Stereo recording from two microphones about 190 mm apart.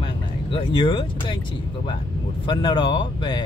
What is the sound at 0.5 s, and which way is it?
Speech, 25° left (ahead or behind).